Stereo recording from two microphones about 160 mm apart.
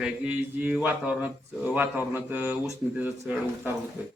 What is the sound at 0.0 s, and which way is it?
Speech, 10° right (ahead or behind).